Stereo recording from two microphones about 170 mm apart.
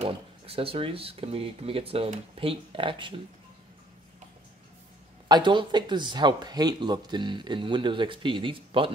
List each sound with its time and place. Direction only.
0.0 s speech: 35° right (ahead or behind)
5.3 s speech: 30° right (ahead or behind)